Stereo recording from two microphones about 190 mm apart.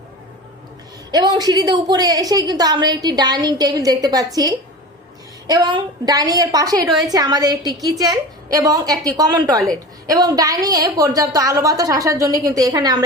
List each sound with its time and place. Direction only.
1.1 s a woman's voice: 20° right (ahead or behind)